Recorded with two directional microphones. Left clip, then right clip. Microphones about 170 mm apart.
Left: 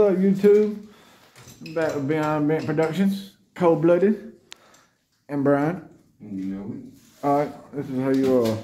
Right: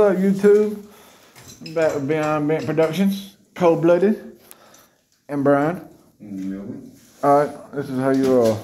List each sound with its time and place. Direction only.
0.0 s speech: 20° left (ahead or behind)
1.7 s speech: 10° left (ahead or behind)
5.2 s speech: 10° left (ahead or behind)
7.2 s speech: centre (ahead or behind)